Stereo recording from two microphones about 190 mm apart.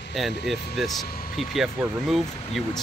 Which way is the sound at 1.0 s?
50° left (ahead or behind).